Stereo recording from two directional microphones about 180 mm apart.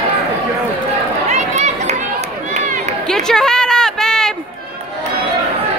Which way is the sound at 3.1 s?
5° left (ahead or behind).